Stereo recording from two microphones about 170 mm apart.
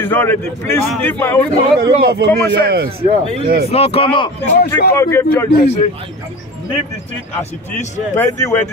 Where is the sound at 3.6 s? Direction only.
35° left (ahead or behind).